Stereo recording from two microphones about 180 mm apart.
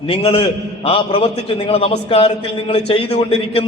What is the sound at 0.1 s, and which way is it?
A man's voice, 30° left (ahead or behind).